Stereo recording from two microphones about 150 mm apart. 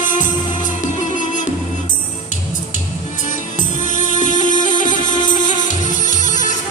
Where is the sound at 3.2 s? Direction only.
55° left (ahead or behind).